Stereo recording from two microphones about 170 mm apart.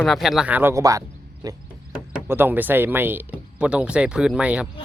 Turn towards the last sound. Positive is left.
turn(degrees=-10)  # may be behind; listen again after turning